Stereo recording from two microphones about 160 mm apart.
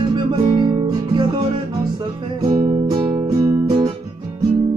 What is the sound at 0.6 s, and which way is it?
Guitar, 30° right (ahead or behind).